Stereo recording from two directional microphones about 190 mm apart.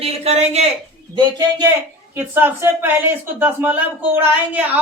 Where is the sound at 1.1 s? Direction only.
20° right (ahead or behind).